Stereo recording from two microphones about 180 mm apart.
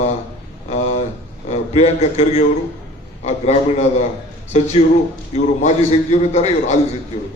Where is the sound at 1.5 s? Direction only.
35° left (ahead or behind).